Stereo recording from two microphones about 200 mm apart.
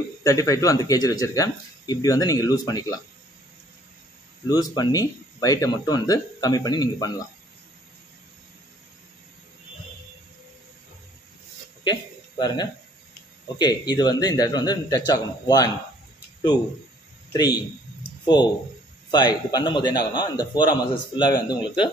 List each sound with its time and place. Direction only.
0.2 s a man's voice: 15° left (ahead or behind)
4.5 s a man's voice: 20° left (ahead or behind)
11.8 s a sound: 20° left (ahead or behind)
13.6 s a man's voice: 20° left (ahead or behind)
17.3 s a man's voice: 20° left (ahead or behind)